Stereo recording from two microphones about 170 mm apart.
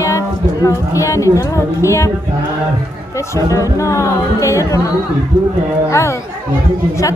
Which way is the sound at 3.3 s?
20° left (ahead or behind).